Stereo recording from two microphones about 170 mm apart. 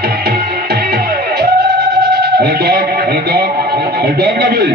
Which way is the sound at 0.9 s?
70° right (ahead or behind).